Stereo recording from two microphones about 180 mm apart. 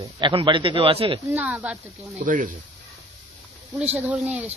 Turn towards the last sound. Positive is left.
turn(degrees=-10)  # may be behind; listen again after turning